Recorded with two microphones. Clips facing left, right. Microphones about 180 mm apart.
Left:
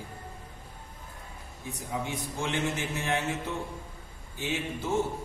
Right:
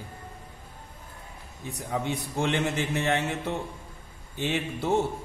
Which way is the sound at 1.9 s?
65° right (ahead or behind).